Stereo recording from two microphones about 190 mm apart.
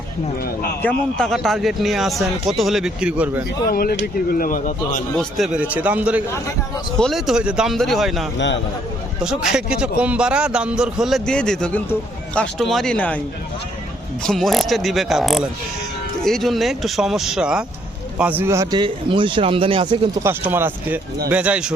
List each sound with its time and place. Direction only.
0.8 s a man's voice: 5° left (ahead or behind)
3.7 s speech: 50° left (ahead or behind)
5.1 s a man's voice: centre (ahead or behind)
8.4 s a man's voice: 70° left (ahead or behind)
9.2 s a man's voice: 5° right (ahead or behind)
14.3 s a man's voice: centre (ahead or behind); by 20.1 s 25° right (ahead or behind)
20.2 s a man's voice: 10° right (ahead or behind)